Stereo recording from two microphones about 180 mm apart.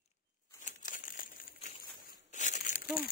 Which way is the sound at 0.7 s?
50° left (ahead or behind).